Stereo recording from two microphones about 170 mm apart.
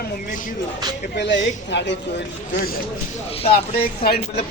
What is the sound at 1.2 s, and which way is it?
Speech, 90° left.